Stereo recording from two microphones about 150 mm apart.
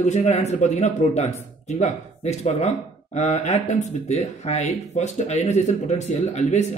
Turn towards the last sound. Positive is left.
turn(degrees=50)  # may be behind; listen again after turning